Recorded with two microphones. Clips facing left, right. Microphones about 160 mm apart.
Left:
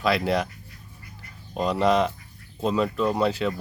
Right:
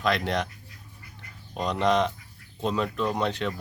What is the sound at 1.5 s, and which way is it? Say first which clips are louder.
Speech: left 3 dB; 5° left (ahead or behind).